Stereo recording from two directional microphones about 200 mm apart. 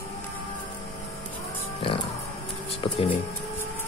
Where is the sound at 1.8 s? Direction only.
30° left (ahead or behind).